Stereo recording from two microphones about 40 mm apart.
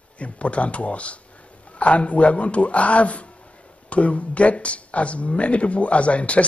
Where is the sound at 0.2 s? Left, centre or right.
Left.